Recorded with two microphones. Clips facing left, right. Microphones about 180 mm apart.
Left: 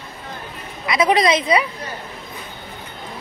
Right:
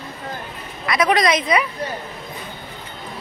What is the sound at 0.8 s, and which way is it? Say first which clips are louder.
Speech: left 1 dB; 25° left (ahead or behind).